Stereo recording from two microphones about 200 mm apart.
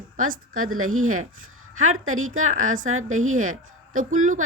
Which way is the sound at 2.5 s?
40° right (ahead or behind).